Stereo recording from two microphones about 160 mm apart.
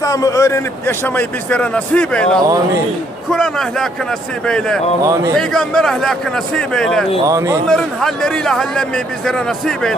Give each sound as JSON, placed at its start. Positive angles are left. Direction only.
{"t": 0.0, "sound": "a man's voice", "side_deg": 20}
{"t": 7.2, "sound": "speech", "side_deg": -20}
{"t": 7.6, "sound": "a man's voice", "side_deg": 5}